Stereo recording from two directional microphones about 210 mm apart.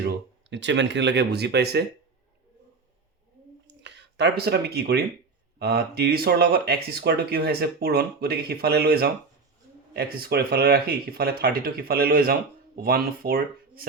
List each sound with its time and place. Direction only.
0.0 s speech: 55° right (ahead or behind)
3.7 s speech: 55° right (ahead or behind)